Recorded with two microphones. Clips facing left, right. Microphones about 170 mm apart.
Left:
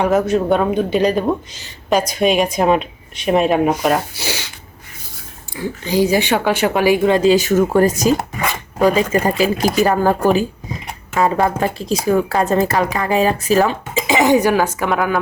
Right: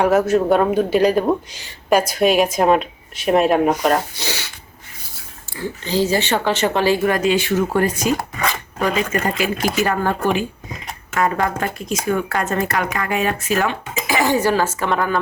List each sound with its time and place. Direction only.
0.0 s speech: 5° right (ahead or behind); by 4.4 s 10° left (ahead or behind)
5.5 s speech: 15° left (ahead or behind)
7.2 s a woman's voice: 35° left (ahead or behind)
11.1 s a woman's voice: 25° left (ahead or behind)
14.1 s speech: 20° left (ahead or behind)